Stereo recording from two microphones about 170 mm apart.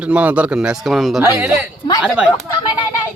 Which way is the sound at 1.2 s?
15° right (ahead or behind).